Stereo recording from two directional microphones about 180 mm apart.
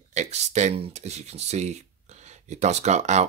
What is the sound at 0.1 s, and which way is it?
Speech, 40° right (ahead or behind).